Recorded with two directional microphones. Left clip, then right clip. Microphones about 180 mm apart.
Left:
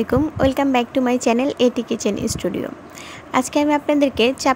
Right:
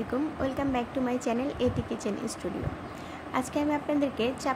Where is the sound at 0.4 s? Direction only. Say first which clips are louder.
Left 14 dB; 55° left (ahead or behind).